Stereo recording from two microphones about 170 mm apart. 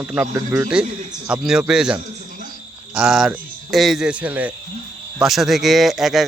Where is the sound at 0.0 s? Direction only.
10° right (ahead or behind).